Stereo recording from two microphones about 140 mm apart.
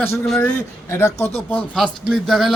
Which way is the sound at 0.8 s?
20° left (ahead or behind).